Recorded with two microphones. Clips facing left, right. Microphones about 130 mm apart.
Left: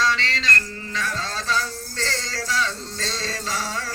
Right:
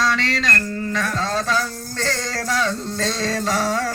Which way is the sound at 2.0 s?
50° right (ahead or behind).